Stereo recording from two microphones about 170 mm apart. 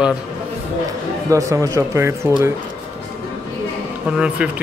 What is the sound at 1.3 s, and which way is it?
Speech, 20° right (ahead or behind).